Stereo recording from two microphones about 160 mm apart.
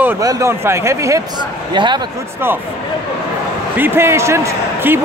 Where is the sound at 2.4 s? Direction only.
15° right (ahead or behind).